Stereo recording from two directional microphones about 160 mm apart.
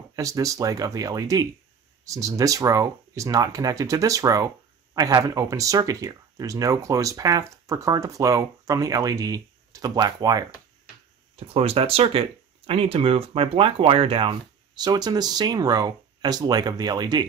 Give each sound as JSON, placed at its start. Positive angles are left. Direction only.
{"t": 0.1, "sound": "speech", "side_deg": -20}
{"t": 11.3, "sound": "speech", "side_deg": -35}